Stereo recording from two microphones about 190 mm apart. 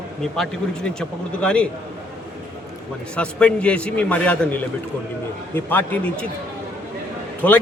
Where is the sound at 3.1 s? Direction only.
5° left (ahead or behind).